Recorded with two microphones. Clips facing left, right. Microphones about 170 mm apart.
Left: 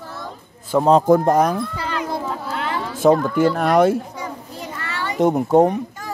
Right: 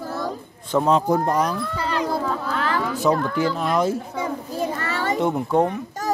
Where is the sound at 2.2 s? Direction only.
20° left (ahead or behind).